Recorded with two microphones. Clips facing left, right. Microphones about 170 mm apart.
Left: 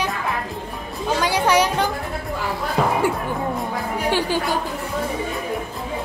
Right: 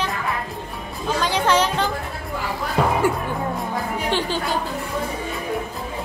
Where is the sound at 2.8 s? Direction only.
Centre (ahead or behind).